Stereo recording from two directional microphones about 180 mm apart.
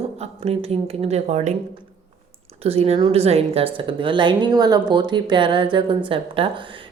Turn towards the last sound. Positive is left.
turn(degrees=-30)  # may be behind; listen again after turning